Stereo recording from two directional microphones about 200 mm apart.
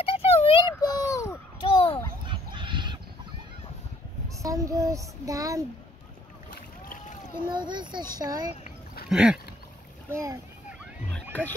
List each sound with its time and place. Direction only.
0.0 s a sound: 30° left (ahead or behind)
2.2 s a sound: 25° right (ahead or behind)
4.4 s a child's voice: 15° right (ahead or behind)
6.5 s rowboat: 40° left (ahead or behind)
7.4 s a child's voice: 20° right (ahead or behind)
9.1 s speech: 5° right (ahead or behind)
11.3 s speech: 10° left (ahead or behind)